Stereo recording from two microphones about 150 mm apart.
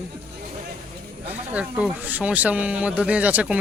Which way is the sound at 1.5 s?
10° right (ahead or behind).